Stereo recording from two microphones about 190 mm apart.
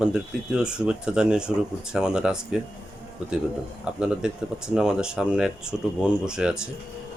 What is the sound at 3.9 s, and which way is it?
Speech, 5° right (ahead or behind).